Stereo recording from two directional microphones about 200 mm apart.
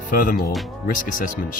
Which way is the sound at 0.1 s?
45° left (ahead or behind).